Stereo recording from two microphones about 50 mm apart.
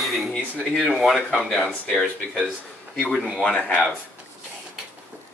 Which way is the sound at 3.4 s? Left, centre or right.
Left.